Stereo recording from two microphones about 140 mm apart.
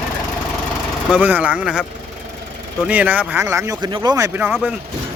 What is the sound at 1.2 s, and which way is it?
Speech, 10° right (ahead or behind).